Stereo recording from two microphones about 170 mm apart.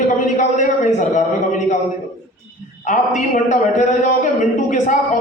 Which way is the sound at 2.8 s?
45° left (ahead or behind).